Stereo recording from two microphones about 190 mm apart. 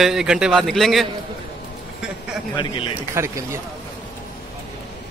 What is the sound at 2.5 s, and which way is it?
Speech, 25° left (ahead or behind).